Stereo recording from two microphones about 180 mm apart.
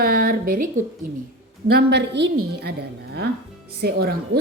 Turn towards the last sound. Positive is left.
turn(degrees=-60)  # may be behind; listen again after turning